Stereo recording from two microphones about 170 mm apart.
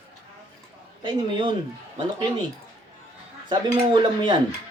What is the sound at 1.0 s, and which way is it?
Speech, 25° right (ahead or behind).